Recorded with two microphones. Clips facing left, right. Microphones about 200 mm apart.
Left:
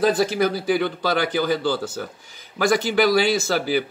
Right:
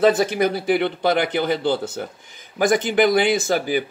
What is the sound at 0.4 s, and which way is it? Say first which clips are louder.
Speech: right 1 dB; 25° right (ahead or behind).